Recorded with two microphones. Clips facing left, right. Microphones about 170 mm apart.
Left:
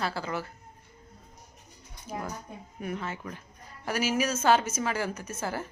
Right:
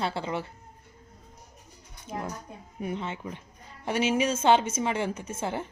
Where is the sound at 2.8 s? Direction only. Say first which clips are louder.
Right 2 dB; 25° right (ahead or behind).